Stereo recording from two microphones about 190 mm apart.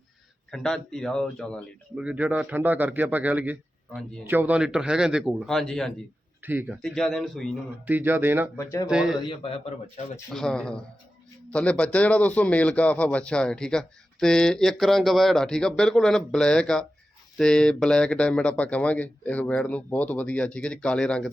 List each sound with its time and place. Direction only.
0.5 s speech: centre (ahead or behind)
2.0 s a man's voice: 10° right (ahead or behind)
6.4 s a man's voice: 10° right (ahead or behind)
6.8 s speech: centre (ahead or behind)
7.9 s a man's voice: 10° right (ahead or behind)
8.5 s speech: 15° left (ahead or behind)
8.9 s speech: 5° right (ahead or behind)
9.2 s speech: 30° left (ahead or behind)
10.2 s speech: 5° left (ahead or behind)